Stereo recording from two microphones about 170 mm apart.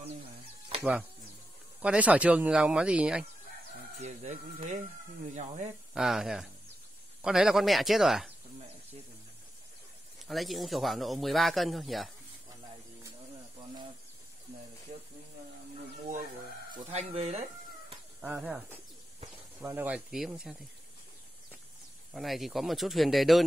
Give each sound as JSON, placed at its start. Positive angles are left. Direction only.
{"t": 0.7, "sound": "a sound", "side_deg": -35}
{"t": 1.8, "sound": "speech", "side_deg": -10}
{"t": 4.0, "sound": "speech", "side_deg": -40}
{"t": 5.9, "sound": "a man's voice", "side_deg": -5}
{"t": 10.1, "sound": "a man's voice", "side_deg": 0}
{"t": 16.7, "sound": "speech", "side_deg": -40}
{"t": 18.2, "sound": "speech", "side_deg": -10}
{"t": 19.6, "sound": "speech", "side_deg": -15}
{"t": 22.1, "sound": "a man's voice", "side_deg": 0}